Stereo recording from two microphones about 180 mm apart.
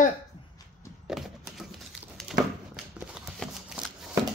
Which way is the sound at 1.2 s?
Centre (ahead or behind).